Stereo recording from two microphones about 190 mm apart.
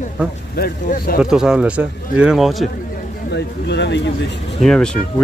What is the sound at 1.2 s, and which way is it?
Speech, 5° right (ahead or behind).